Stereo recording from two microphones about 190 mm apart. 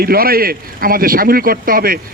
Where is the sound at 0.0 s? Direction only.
50° right (ahead or behind).